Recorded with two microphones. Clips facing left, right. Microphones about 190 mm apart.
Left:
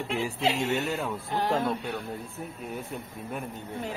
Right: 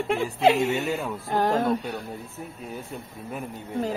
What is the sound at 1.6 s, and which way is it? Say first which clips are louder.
Speech: right 4 dB; 40° right (ahead or behind).